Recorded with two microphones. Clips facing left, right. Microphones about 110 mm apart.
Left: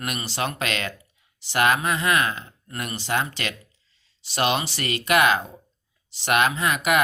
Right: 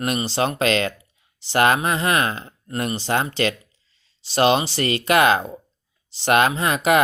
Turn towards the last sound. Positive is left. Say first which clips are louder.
# right 4 dB
turn(degrees=-30)  # may be behind; listen again after turning